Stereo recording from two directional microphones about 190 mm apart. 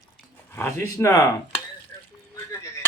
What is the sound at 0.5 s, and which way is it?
Speech, 10° left (ahead or behind).